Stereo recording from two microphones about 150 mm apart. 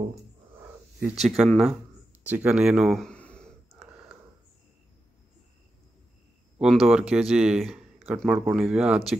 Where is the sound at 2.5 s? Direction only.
5° right (ahead or behind).